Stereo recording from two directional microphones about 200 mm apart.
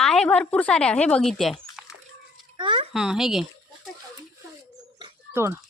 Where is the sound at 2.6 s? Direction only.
25° right (ahead or behind).